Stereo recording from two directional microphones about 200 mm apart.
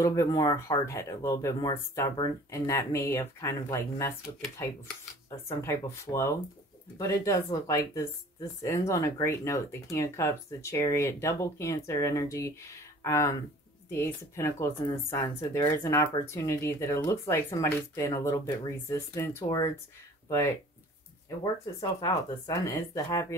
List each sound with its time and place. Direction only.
0.0 s speech: 15° left (ahead or behind)
5.3 s speech: 15° left (ahead or behind)
21.7 s speech: 20° left (ahead or behind)